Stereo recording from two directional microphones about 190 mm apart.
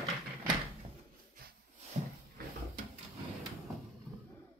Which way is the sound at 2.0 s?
35° right (ahead or behind).